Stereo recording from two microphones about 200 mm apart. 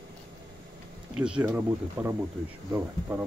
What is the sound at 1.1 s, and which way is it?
Speech, 5° right (ahead or behind).